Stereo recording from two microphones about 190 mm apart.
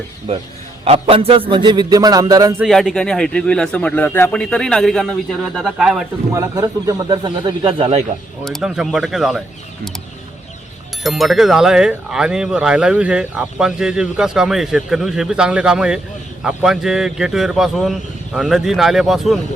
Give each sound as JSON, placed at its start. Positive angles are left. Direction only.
{"t": 0.9, "sound": "a man's voice", "side_deg": -30}
{"t": 2.6, "sound": "speech", "side_deg": 0}
{"t": 6.3, "sound": "a man's voice", "side_deg": -20}
{"t": 8.4, "sound": "speech", "side_deg": 0}
{"t": 11.0, "sound": "speech", "side_deg": 0}